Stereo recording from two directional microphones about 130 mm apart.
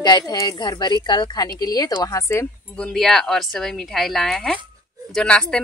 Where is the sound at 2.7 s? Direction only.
5° left (ahead or behind).